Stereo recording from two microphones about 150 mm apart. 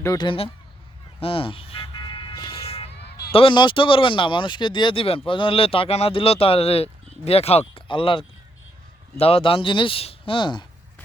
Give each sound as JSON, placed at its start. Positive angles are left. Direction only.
{"t": 0.0, "sound": "speech", "side_deg": 20}
{"t": 0.3, "sound": "speech", "side_deg": 40}
{"t": 1.2, "sound": "vehicle", "side_deg": 35}
{"t": 3.3, "sound": "speech", "side_deg": 35}